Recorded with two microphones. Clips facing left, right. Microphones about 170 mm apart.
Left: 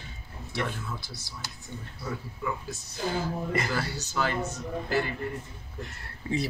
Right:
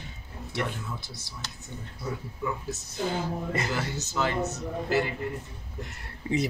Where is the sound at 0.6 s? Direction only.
20° right (ahead or behind).